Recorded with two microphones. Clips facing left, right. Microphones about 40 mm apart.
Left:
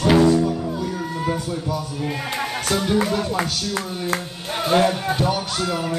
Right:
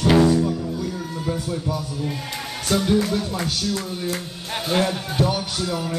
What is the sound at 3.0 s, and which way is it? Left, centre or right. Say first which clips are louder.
Speech: left 2 dB; centre.